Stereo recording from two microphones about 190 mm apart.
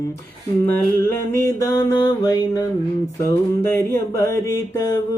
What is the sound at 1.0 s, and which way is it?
Mantra, 15° left (ahead or behind).